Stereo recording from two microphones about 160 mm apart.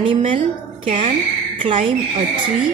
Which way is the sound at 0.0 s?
35° right (ahead or behind).